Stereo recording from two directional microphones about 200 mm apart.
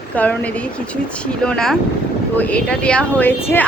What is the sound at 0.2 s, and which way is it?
A woman's voice, 5° left (ahead or behind).